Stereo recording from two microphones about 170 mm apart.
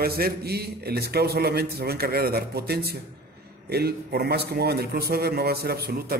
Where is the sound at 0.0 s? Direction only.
65° right (ahead or behind).